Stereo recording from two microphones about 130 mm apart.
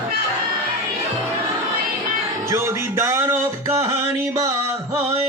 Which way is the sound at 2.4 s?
20° right (ahead or behind).